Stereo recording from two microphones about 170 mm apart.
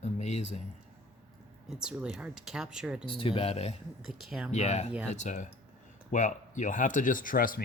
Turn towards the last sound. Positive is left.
turn(degrees=55)  # may be behind; listen again after turning